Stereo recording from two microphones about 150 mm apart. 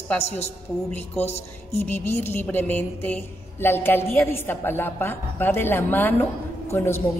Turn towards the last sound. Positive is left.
turn(degrees=15)  # may be behind; listen again after turning